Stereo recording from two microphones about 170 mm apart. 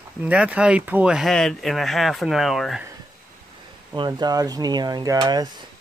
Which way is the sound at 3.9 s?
25° right (ahead or behind).